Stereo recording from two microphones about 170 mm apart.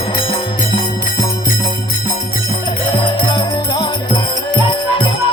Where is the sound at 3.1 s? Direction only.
25° left (ahead or behind).